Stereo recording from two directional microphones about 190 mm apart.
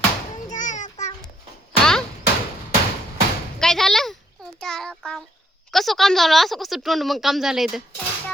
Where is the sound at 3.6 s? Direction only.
Centre (ahead or behind).